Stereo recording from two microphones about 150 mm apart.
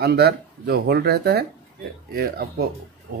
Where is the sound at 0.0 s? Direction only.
90° right.